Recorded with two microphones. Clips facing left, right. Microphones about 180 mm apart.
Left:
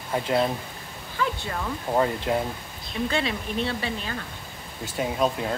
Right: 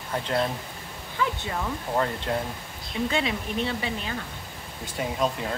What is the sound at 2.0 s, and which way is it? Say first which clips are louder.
Speech: left 4 dB; 10° left (ahead or behind).